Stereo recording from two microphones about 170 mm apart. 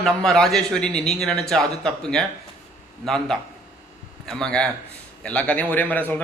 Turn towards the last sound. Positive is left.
turn(degrees=10)  # may be behind; listen again after turning